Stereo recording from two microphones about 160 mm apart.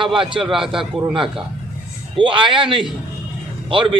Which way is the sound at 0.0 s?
30° right (ahead or behind).